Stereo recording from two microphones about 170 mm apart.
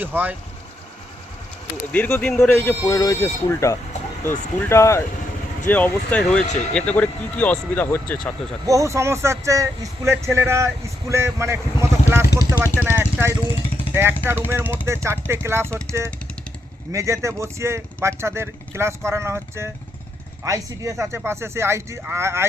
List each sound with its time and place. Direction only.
0.0 s speech: 10° right (ahead or behind)
1.9 s speech: 10° left (ahead or behind)
8.6 s speech: 20° right (ahead or behind)